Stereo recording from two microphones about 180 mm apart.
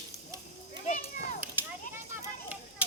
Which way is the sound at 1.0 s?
55° left (ahead or behind).